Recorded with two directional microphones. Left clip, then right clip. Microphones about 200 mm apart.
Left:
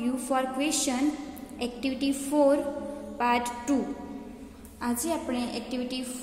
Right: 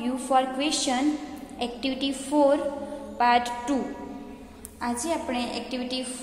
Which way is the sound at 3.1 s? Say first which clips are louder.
Right 5 dB; 15° left (ahead or behind).